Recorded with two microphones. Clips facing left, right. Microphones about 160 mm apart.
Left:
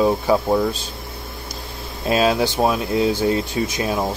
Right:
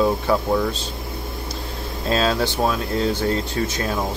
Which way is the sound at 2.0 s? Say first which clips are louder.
Left 3 dB; 15° left (ahead or behind).